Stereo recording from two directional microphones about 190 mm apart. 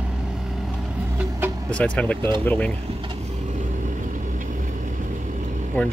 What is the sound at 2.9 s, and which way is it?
Vehicle, 30° right (ahead or behind).